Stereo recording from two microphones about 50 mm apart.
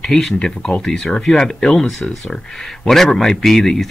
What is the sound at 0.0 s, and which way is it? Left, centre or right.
Speech, centre.